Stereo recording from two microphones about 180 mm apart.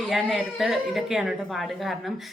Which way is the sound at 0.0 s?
Centre (ahead or behind).